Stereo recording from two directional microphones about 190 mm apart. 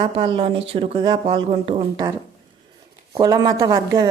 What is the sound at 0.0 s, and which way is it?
Speech, 25° right (ahead or behind).